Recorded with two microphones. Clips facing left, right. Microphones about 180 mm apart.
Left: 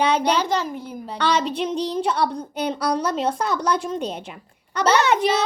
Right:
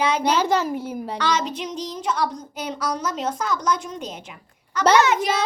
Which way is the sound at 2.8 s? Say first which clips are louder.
Left 3 dB; 35° left (ahead or behind).